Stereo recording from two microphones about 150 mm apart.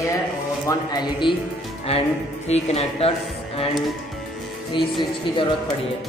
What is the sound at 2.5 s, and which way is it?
Speech, 45° left (ahead or behind).